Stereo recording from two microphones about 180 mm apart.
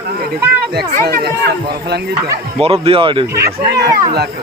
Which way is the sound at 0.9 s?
60° right (ahead or behind).